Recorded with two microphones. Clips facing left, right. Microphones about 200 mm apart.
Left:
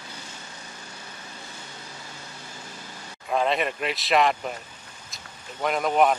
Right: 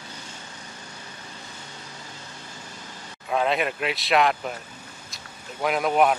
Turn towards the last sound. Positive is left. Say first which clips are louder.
# right 1 dB
turn(degrees=-5)  # may be behind; listen again after turning